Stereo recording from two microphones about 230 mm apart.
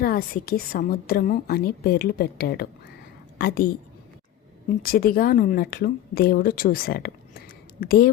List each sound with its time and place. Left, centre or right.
0.0 s a woman's voice: left
4.8 s speech: left